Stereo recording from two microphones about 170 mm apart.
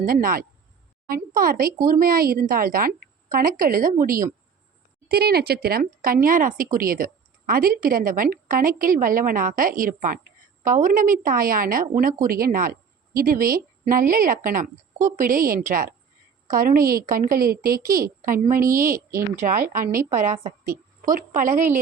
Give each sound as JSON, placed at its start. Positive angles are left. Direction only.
{"t": 0.0, "sound": "a woman's voice", "side_deg": -60}